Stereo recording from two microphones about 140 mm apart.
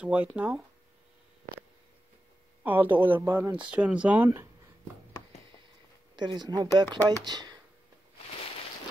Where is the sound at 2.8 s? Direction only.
35° right (ahead or behind).